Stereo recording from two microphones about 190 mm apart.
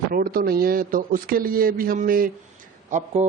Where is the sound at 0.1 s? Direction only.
50° right (ahead or behind).